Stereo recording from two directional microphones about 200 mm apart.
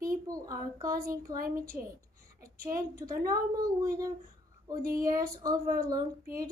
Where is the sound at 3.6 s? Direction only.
15° right (ahead or behind).